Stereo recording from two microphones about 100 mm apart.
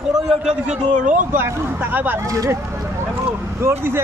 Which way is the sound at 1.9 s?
20° right (ahead or behind).